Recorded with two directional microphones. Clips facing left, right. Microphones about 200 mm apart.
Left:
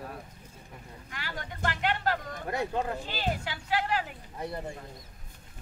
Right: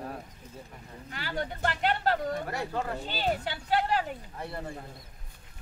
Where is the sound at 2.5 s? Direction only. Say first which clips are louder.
Left 2 dB; 20° left (ahead or behind).